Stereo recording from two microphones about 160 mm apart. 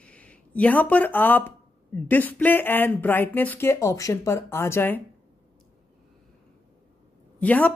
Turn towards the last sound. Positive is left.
turn(degrees=10)  # may be behind; listen again after turning